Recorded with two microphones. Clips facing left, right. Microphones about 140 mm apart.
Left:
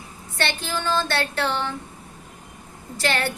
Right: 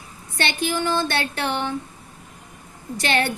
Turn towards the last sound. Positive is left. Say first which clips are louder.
# right 2 dB
turn(degrees=-20)  # may be behind; listen again after turning